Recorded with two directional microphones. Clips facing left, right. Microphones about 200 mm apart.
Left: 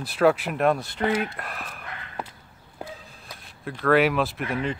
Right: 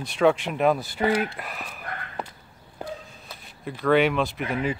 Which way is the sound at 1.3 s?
Centre (ahead or behind).